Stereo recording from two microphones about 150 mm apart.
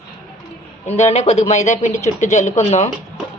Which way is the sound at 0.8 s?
45° left (ahead or behind).